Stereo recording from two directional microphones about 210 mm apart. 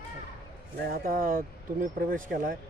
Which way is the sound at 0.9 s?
40° right (ahead or behind).